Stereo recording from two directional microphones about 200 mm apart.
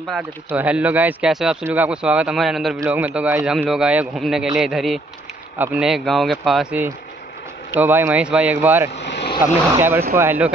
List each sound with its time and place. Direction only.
0.1 s speech: 5° right (ahead or behind)
8.9 s vehicle: 60° left (ahead or behind)
10.1 s speech: 10° right (ahead or behind)